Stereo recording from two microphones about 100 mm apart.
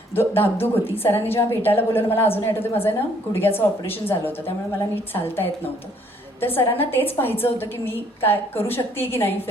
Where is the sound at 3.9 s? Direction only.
20° left (ahead or behind).